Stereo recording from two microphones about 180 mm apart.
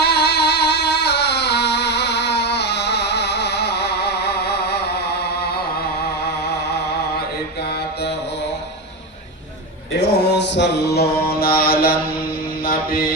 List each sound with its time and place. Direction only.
0.0 s music: 65° left (ahead or behind)
6.4 s a sound: 65° left (ahead or behind)
10.1 s mantra: 65° left (ahead or behind)